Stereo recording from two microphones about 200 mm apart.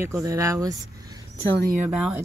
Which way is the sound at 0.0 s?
15° right (ahead or behind).